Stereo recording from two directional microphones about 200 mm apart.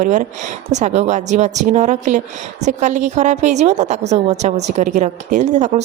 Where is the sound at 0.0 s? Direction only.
40° right (ahead or behind).